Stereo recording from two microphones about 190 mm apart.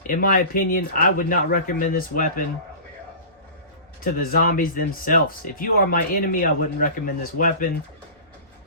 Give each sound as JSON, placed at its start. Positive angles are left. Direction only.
{"t": 0.1, "sound": "speech", "side_deg": 45}
{"t": 4.0, "sound": "speech", "side_deg": 50}